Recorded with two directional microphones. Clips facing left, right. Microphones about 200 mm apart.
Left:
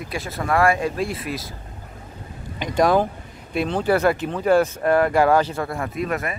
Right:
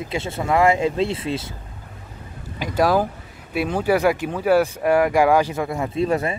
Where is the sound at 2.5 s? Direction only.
5° right (ahead or behind); by 6.3 s 30° right (ahead or behind).